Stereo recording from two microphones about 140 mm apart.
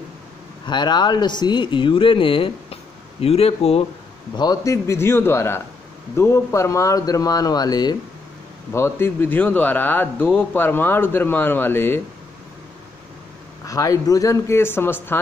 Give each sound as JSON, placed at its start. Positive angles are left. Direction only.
{"t": 0.7, "sound": "speech", "side_deg": 30}
{"t": 4.4, "sound": "speech", "side_deg": 25}
{"t": 8.7, "sound": "speech", "side_deg": 20}
{"t": 13.7, "sound": "speech", "side_deg": 25}